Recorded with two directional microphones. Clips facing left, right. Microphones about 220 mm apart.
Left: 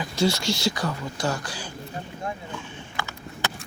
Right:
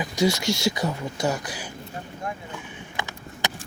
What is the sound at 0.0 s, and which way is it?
Speech, 20° right (ahead or behind).